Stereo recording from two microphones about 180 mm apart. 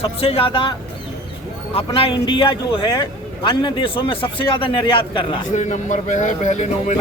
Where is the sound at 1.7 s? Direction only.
30° left (ahead or behind).